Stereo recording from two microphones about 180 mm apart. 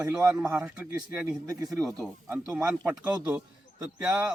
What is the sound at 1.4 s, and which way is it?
Speech, 20° right (ahead or behind).